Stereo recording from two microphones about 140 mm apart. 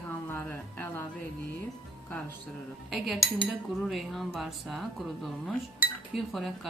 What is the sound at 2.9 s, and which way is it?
Speech, centre (ahead or behind).